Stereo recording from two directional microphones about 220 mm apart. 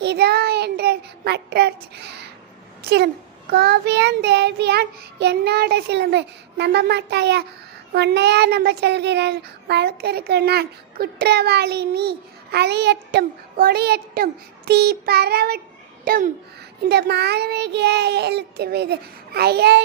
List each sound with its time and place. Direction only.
0.0 s child singing: 50° right (ahead or behind)
3.5 s child singing: 50° right (ahead or behind)
16.0 s a child's voice: 40° right (ahead or behind)
16.9 s child singing: 50° right (ahead or behind)